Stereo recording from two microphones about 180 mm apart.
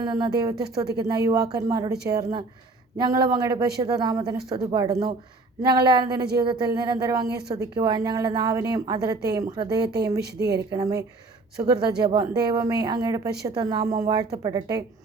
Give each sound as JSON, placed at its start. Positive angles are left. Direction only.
{"t": 0.0, "sound": "a woman's voice", "side_deg": -20}